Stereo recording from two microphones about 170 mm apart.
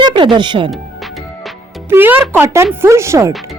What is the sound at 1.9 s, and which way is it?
A woman's voice, 10° right (ahead or behind).